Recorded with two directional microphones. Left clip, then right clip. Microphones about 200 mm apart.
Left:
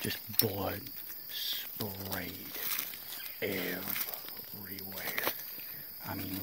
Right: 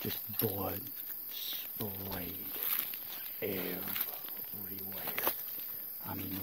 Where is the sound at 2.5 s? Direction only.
45° left (ahead or behind).